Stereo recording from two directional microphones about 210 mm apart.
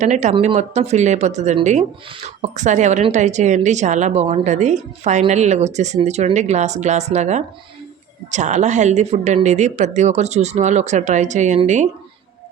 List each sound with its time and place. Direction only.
0.0 s speech: 35° right (ahead or behind)